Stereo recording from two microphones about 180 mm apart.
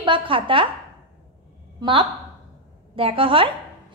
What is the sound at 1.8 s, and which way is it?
A woman's voice, 25° right (ahead or behind).